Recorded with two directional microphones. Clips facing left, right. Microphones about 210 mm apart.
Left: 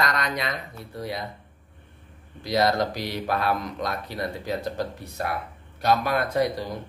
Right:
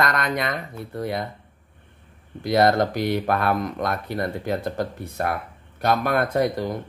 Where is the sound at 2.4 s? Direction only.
55° right (ahead or behind).